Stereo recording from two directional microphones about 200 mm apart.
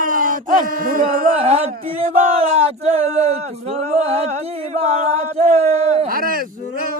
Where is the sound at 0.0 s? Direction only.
40° right (ahead or behind).